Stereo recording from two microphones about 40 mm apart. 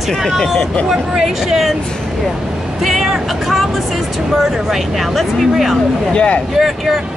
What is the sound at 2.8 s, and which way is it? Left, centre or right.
Speech, centre.